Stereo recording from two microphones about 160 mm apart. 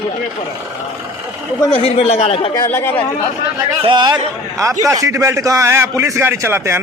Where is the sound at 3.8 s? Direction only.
30° right (ahead or behind).